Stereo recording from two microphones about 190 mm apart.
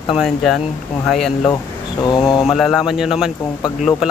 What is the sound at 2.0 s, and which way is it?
Speech, 25° left (ahead or behind).